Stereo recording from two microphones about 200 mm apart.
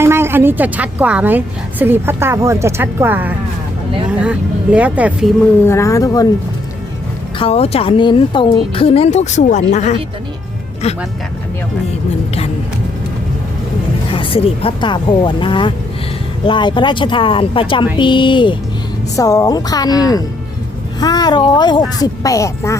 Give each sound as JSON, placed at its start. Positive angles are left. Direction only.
{"t": 0.0, "sound": "a woman's voice", "side_deg": -10}
{"t": 5.6, "sound": "speech", "side_deg": 15}
{"t": 7.3, "sound": "speech", "side_deg": 30}
{"t": 14.1, "sound": "speech", "side_deg": 30}